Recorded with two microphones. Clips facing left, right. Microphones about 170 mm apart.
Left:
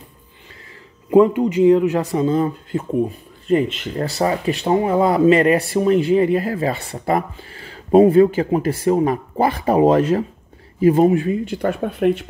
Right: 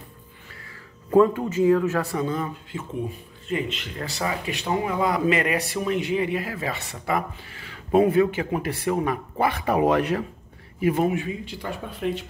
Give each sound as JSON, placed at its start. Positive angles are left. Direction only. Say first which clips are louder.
{"t": 1.1, "sound": "speech", "louder": "left 5 dB", "side_deg": 15}
{"t": 3.4, "sound": "speech", "louder": "left 10 dB", "side_deg": 45}
{"t": 11.2, "sound": "speech", "louder": "left 11 dB", "side_deg": 50}